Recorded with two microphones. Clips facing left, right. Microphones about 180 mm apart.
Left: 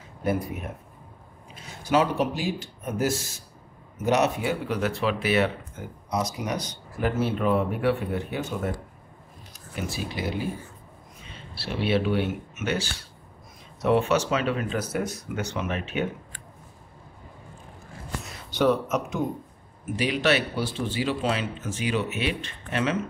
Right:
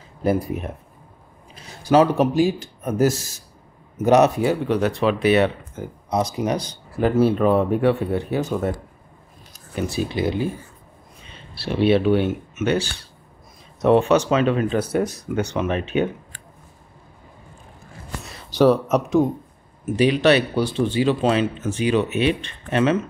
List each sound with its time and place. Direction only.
0.2 s speech: 35° right (ahead or behind)
1.5 s a sound: 35° right (ahead or behind)
2.1 s speech: 45° right (ahead or behind)
10.1 s speech: 25° right (ahead or behind)
11.8 s speech: 25° right (ahead or behind)
13.8 s speech: 30° right (ahead or behind)
18.5 s speech: 35° right (ahead or behind)
20.1 s speech: 25° right (ahead or behind)